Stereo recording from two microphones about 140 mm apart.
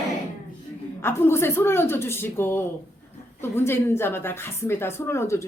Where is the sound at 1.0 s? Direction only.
15° left (ahead or behind).